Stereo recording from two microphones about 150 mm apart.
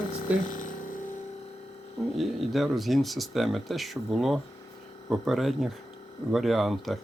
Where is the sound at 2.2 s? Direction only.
Centre (ahead or behind).